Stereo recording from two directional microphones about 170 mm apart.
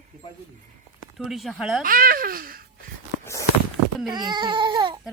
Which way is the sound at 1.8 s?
55° right (ahead or behind).